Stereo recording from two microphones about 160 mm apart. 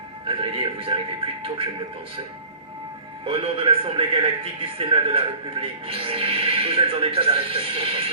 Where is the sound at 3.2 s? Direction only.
35° right (ahead or behind).